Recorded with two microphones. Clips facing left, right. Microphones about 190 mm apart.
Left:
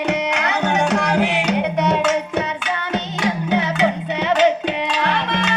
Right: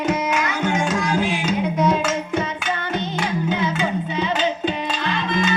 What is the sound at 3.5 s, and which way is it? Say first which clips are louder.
Music: left 6 dB; 70° left (ahead or behind).